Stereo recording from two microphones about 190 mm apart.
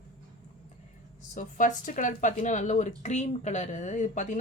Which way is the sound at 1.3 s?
40° left (ahead or behind).